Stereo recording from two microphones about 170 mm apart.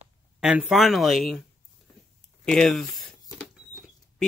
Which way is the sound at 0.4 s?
5° right (ahead or behind).